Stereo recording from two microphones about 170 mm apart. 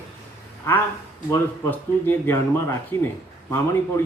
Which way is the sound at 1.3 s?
10° left (ahead or behind).